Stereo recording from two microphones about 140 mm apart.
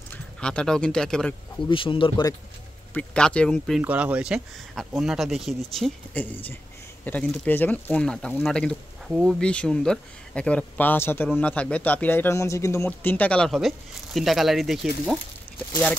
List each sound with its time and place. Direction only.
0.1 s speech: 5° left (ahead or behind)
1.7 s speech: 35° left (ahead or behind)
2.9 s speech: 5° left (ahead or behind)
3.8 s speech: 10° right (ahead or behind)